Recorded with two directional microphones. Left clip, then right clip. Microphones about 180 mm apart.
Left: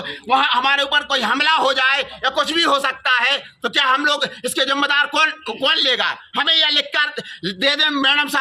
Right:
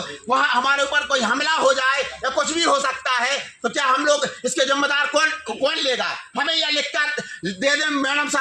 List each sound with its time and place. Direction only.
0.3 s a man's voice: 25° left (ahead or behind)